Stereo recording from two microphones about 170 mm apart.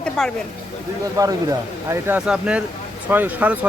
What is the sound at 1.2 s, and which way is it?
Speech, 20° right (ahead or behind).